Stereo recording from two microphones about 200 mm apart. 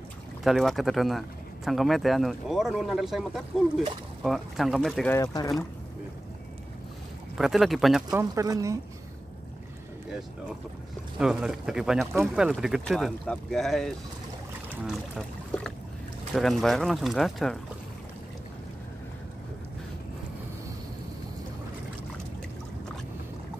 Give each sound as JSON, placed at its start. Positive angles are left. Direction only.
{"t": 0.4, "sound": "speech", "side_deg": 0}
{"t": 5.1, "sound": "speech", "side_deg": 20}
{"t": 7.3, "sound": "speech", "side_deg": 0}
{"t": 8.1, "sound": "speech", "side_deg": -15}
{"t": 11.1, "sound": "speech", "side_deg": -5}